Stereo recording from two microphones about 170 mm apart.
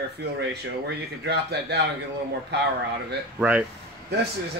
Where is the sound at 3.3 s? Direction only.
10° right (ahead or behind).